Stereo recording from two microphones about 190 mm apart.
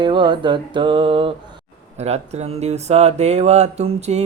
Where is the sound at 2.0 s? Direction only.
35° right (ahead or behind).